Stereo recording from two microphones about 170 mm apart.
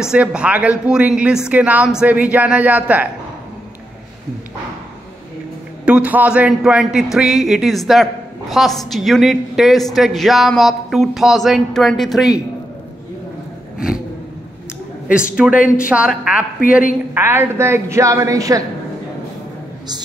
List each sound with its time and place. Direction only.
0.0 s speech: 5° right (ahead or behind)
5.9 s a woman's voice: 10° right (ahead or behind)
15.3 s a woman's voice: 5° right (ahead or behind)